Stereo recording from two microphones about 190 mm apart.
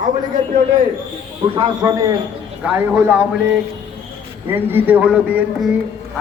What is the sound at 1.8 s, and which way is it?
Speech, 20° right (ahead or behind).